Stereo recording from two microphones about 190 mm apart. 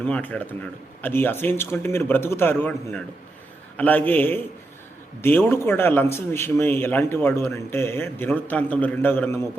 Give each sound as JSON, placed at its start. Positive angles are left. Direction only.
{"t": 0.0, "sound": "a man's voice", "side_deg": 10}